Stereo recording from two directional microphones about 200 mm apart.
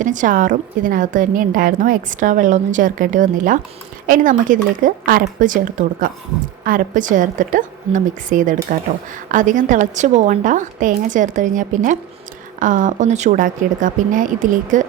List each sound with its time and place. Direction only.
0.0 s a woman's voice: 40° right (ahead or behind)